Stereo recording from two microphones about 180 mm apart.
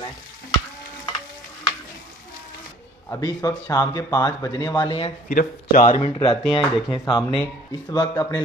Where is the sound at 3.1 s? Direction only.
20° left (ahead or behind).